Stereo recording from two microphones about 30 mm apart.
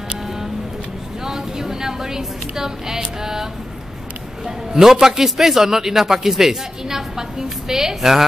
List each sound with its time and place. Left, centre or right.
1.2 s a sound: centre
3.0 s a man's voice: centre
4.5 s a man's voice: centre